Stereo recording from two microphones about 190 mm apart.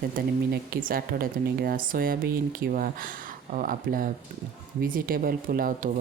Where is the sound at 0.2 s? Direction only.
50° right (ahead or behind).